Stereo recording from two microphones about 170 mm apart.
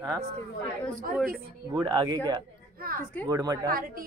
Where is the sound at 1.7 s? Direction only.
25° right (ahead or behind).